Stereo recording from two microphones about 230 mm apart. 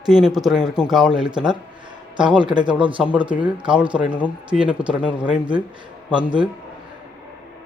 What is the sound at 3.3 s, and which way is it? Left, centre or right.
Speech, centre.